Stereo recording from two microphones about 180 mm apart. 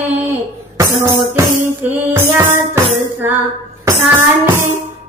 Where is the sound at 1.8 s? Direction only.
15° right (ahead or behind).